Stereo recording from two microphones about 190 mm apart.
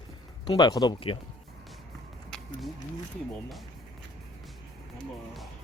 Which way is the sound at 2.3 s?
Centre (ahead or behind).